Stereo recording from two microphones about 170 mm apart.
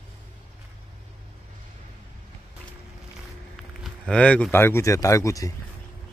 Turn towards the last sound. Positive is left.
turn(degrees=20)  # may be behind; listen again after turning